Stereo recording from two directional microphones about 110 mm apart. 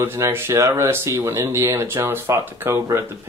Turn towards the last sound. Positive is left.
turn(degrees=-25)  # may be behind; listen again after turning